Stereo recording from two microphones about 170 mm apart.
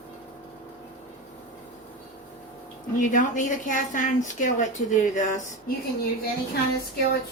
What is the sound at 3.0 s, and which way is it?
A woman's voice, 50° left (ahead or behind).